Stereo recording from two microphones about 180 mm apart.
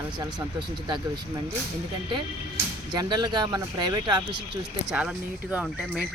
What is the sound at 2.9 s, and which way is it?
Speech, 25° right (ahead or behind).